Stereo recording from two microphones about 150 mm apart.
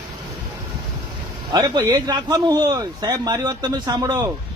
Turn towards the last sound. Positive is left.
turn(degrees=-25)  # may be behind; listen again after turning